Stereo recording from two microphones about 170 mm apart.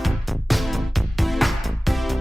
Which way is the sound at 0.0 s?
Centre (ahead or behind).